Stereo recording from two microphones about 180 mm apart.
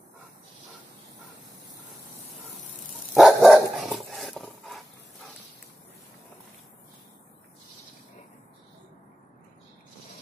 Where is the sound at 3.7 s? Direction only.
Centre (ahead or behind).